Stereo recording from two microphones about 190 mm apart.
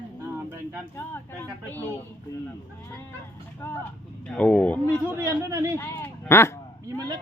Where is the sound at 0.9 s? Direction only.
10° left (ahead or behind).